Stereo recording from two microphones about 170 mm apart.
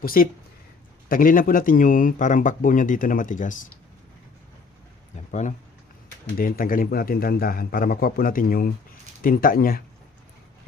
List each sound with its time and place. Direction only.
0.0 s a man's voice: 60° left (ahead or behind)
5.3 s a man's voice: 45° left (ahead or behind)
6.3 s a man's voice: 55° left (ahead or behind)